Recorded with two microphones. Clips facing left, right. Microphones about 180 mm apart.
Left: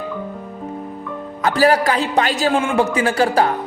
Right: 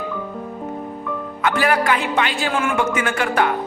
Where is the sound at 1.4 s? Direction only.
35° left (ahead or behind).